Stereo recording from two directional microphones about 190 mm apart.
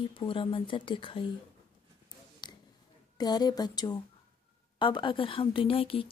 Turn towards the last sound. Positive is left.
turn(degrees=30)  # may be behind; listen again after turning